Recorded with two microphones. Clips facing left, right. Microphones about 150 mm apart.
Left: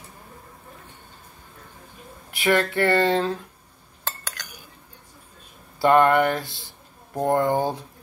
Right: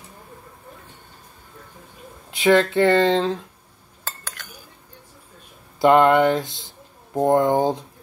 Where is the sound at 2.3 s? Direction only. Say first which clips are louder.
Right 5 dB; 20° right (ahead or behind).